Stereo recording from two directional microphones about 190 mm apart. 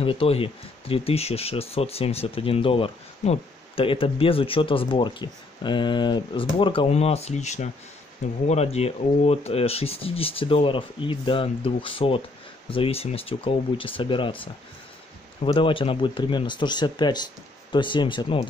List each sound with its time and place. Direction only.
0.0 s speech: 30° left (ahead or behind)